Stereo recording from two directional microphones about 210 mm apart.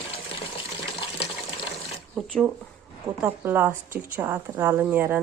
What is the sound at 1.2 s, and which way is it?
Water, 25° left (ahead or behind).